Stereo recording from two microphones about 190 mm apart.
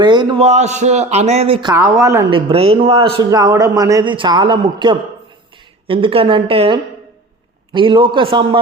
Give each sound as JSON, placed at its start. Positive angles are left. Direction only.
{"t": 0.0, "sound": "a man's voice", "side_deg": -25}
{"t": 2.3, "sound": "a man's voice", "side_deg": -30}